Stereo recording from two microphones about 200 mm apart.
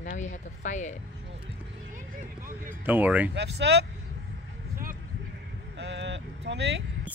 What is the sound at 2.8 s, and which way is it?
Speech, 10° right (ahead or behind).